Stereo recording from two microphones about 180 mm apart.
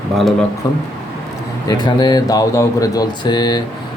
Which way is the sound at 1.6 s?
25° left (ahead or behind).